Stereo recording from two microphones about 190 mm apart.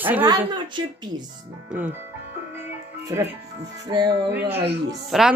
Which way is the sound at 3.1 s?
15° right (ahead or behind).